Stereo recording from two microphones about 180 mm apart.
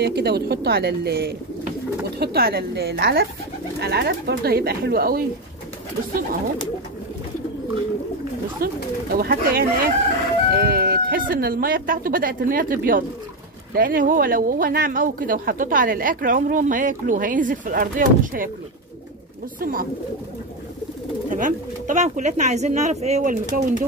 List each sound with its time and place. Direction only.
0.0 s speech: 65° right (ahead or behind)
8.6 s speech: 55° right (ahead or behind)
19.6 s speech: 55° right (ahead or behind)
21.3 s speech: 45° right (ahead or behind)